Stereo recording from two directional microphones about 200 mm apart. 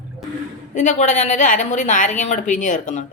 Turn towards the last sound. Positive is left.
turn(degrees=40)  # may be behind; listen again after turning